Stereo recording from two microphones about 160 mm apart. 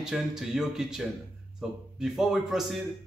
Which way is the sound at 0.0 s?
5° right (ahead or behind).